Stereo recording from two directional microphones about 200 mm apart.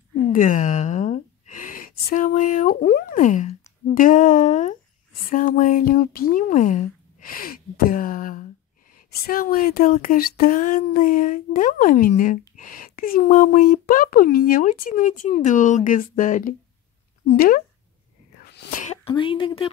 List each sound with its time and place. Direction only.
0.3 s a woman's voice: 40° left (ahead or behind)
18.4 s sneeze: 55° left (ahead or behind)
18.7 s a sound: 40° left (ahead or behind)
19.0 s speech: 25° left (ahead or behind)